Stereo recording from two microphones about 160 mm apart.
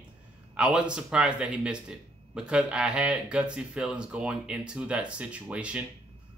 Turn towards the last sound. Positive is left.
turn(degrees=-10)  # may be behind; listen again after turning